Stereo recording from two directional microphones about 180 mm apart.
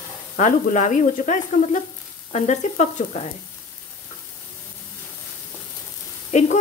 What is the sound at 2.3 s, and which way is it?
Speech, 40° left (ahead or behind).